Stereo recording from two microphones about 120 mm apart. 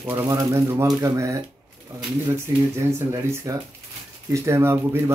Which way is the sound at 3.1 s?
25° right (ahead or behind).